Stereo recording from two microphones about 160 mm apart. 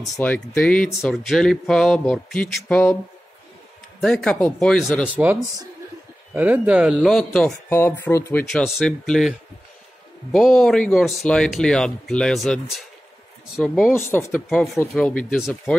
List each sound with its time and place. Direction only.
0.2 s speech: 10° left (ahead or behind)
4.0 s speech: 5° left (ahead or behind)
5.1 s speech: 10° right (ahead or behind)
7.2 s speech: 5° left (ahead or behind)
7.7 s speech: 15° left (ahead or behind)
10.3 s speech: 5° left (ahead or behind)
13.6 s speech: centre (ahead or behind)
13.9 s speech: 15° left (ahead or behind); by 15.8 s centre (ahead or behind)